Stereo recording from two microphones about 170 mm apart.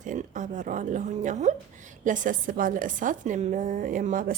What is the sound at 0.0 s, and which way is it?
Speech, 50° right (ahead or behind).